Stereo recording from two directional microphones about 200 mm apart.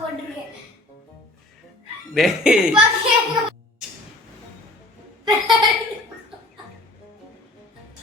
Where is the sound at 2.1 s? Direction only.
Centre (ahead or behind).